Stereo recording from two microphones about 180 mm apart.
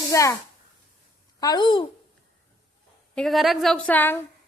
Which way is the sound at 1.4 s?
25° left (ahead or behind).